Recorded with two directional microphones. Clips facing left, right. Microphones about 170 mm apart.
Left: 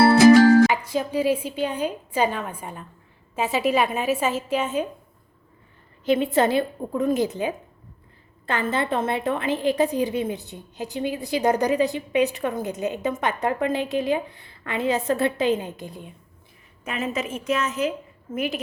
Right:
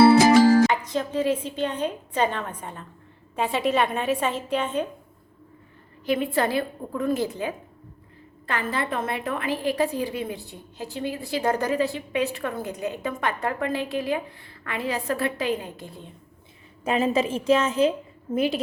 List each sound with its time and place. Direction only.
0.7 s a woman's voice: 10° left (ahead or behind)
6.1 s a woman's voice: 25° left (ahead or behind)
16.8 s a woman's voice: 30° right (ahead or behind)